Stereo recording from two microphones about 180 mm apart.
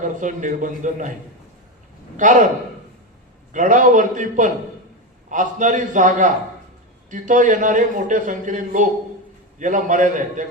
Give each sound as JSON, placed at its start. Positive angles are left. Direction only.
{"t": 0.0, "sound": "a man's voice", "side_deg": -45}
{"t": 2.1, "sound": "a man's voice", "side_deg": -45}
{"t": 3.5, "sound": "a man's voice", "side_deg": -45}